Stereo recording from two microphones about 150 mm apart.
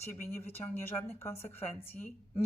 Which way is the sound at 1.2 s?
15° left (ahead or behind).